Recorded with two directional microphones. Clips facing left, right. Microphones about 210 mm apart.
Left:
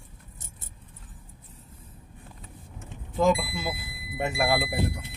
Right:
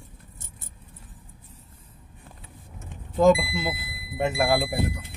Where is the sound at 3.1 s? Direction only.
25° right (ahead or behind).